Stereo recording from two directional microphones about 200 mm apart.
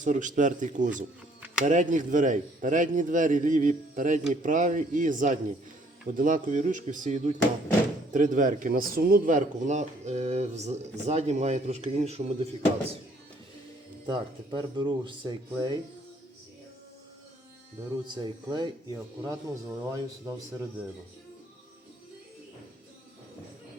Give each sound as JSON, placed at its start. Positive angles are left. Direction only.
{"t": 0.0, "sound": "a man's voice", "side_deg": -40}
{"t": 14.1, "sound": "speech", "side_deg": -25}
{"t": 18.0, "sound": "speech", "side_deg": -20}